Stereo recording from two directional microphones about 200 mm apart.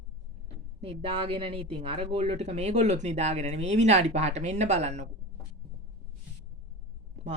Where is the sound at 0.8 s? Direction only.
30° right (ahead or behind).